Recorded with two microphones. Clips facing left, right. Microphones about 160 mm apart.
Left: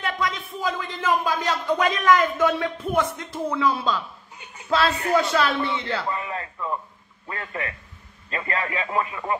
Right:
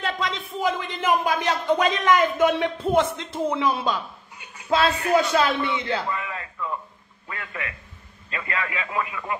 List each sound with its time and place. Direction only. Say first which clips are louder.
0.0 s a sound: even; 25° right (ahead or behind)
0.6 s speech: right 4 dB; 20° right (ahead or behind)
6.0 s a man's voice: left 1 dB; 35° left (ahead or behind)